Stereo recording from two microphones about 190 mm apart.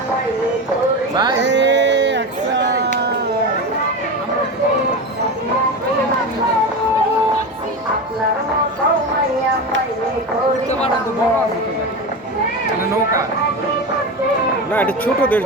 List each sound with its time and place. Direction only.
1.1 s music: 20° right (ahead or behind)
1.4 s a sound: 70° right (ahead or behind)
14.7 s speech: 10° left (ahead or behind)